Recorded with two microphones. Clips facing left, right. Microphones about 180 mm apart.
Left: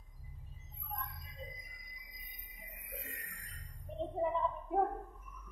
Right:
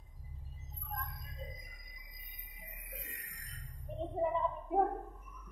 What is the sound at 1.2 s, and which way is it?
Music, 50° right (ahead or behind).